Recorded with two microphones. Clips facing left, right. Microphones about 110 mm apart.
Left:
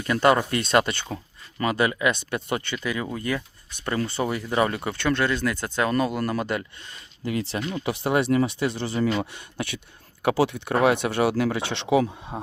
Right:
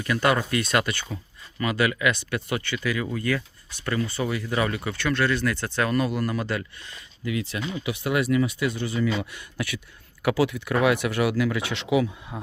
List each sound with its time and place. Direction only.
0.0 s speech: 30° left (ahead or behind)
5.9 s speech: 30° left (ahead or behind)
7.3 s speech: 40° left (ahead or behind)
9.2 s speech: 25° left (ahead or behind)